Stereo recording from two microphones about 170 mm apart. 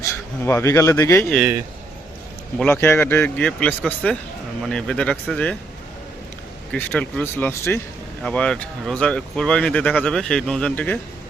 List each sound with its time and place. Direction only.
0.0 s speech: 15° left (ahead or behind)
2.6 s speech: 10° left (ahead or behind)
6.7 s speech: 10° left (ahead or behind)